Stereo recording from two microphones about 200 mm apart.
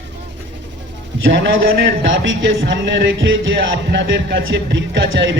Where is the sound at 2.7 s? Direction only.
65° right (ahead or behind).